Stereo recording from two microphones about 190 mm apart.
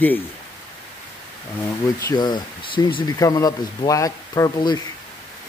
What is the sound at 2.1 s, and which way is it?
Speech, 25° left (ahead or behind).